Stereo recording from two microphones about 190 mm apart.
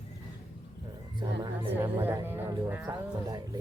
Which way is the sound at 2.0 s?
10° right (ahead or behind).